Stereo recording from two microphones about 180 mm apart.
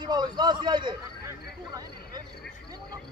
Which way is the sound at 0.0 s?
25° right (ahead or behind).